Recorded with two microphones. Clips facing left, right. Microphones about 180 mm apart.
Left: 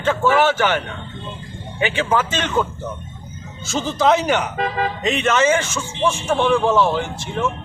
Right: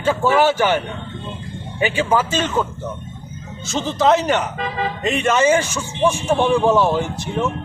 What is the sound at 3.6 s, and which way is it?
Speech, centre (ahead or behind).